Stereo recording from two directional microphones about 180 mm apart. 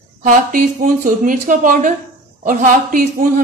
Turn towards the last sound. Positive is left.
turn(degrees=-50)  # may be behind; listen again after turning